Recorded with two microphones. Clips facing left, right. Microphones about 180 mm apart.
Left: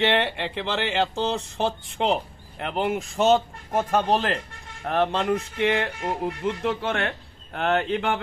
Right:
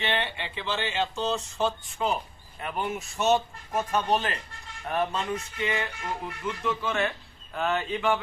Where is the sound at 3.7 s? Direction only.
90° left.